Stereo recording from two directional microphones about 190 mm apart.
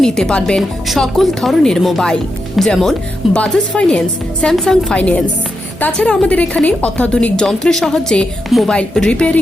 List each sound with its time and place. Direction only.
0.0 s a woman's voice: 5° left (ahead or behind)